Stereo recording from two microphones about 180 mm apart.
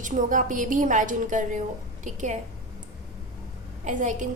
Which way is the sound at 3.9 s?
45° right (ahead or behind).